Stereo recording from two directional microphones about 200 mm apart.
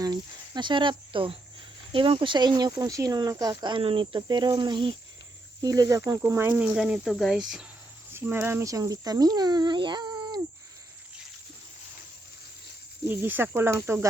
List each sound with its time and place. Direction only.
0.0 s speech: 20° right (ahead or behind)
13.1 s speech: 10° right (ahead or behind)